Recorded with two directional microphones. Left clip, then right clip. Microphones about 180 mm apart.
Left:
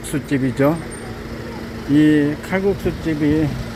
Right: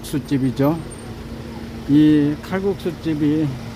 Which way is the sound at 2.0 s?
20° right (ahead or behind).